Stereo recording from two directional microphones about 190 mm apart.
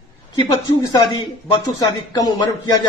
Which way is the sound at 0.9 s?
25° left (ahead or behind).